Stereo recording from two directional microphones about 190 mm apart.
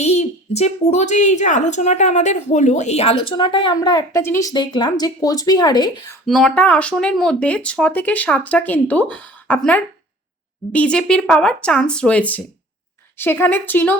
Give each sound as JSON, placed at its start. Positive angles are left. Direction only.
{"t": 0.0, "sound": "speech", "side_deg": 35}
{"t": 6.2, "sound": "speech", "side_deg": 0}